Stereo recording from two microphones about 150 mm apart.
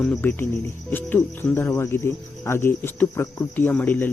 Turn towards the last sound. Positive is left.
turn(degrees=10)  # may be behind; listen again after turning